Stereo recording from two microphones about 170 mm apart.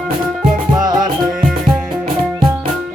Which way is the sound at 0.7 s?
25° right (ahead or behind).